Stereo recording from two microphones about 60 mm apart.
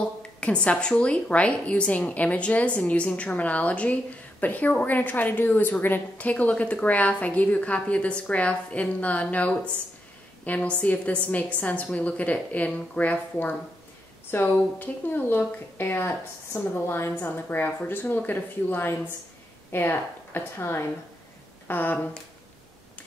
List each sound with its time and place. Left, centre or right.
0.4 s a woman's voice: centre